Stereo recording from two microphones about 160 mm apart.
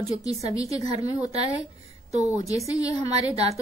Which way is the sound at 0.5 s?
20° left (ahead or behind).